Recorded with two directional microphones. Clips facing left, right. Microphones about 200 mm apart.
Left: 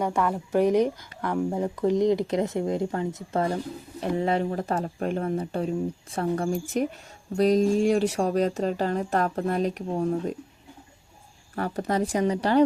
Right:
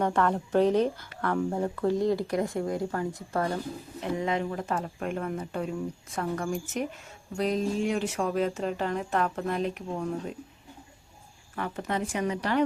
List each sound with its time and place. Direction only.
0.0 s speech: 10° left (ahead or behind)
4.2 s speech: 35° left (ahead or behind)
11.5 s speech: 40° left (ahead or behind)